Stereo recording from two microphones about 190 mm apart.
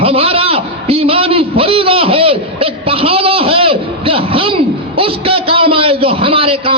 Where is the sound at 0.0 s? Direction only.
30° right (ahead or behind).